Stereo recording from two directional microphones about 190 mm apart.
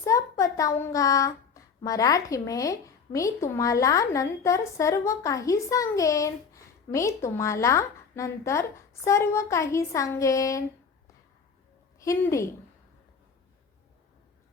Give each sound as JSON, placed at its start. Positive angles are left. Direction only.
{"t": 0.0, "sound": "speech", "side_deg": 15}
{"t": 11.9, "sound": "a woman's voice", "side_deg": 15}